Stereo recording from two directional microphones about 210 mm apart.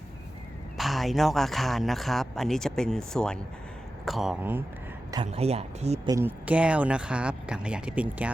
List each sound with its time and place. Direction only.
0.8 s a man's voice: centre (ahead or behind)
5.1 s speech: 25° right (ahead or behind)
6.1 s a man's voice: 10° right (ahead or behind)